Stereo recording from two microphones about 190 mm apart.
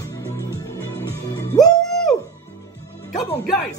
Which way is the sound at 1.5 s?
20° left (ahead or behind).